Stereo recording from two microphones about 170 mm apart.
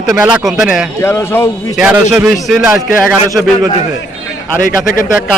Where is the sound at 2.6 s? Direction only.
15° right (ahead or behind).